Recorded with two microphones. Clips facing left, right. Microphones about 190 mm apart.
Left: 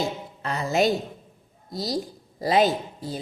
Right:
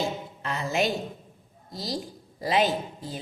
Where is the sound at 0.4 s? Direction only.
40° left (ahead or behind).